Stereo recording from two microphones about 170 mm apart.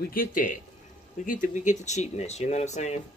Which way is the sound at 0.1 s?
55° left (ahead or behind).